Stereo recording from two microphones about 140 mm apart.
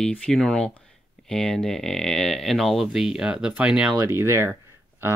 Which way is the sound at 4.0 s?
20° right (ahead or behind).